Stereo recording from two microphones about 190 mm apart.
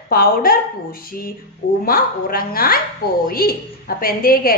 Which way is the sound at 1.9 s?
50° left (ahead or behind).